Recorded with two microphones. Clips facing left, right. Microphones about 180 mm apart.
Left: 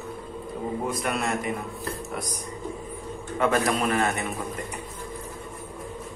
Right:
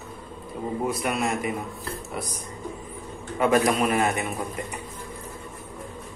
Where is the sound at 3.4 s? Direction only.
15° right (ahead or behind).